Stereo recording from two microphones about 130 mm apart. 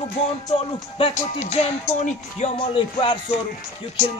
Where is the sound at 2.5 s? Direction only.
40° left (ahead or behind).